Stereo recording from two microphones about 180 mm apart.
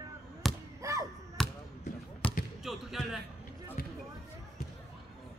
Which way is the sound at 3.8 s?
55° left (ahead or behind).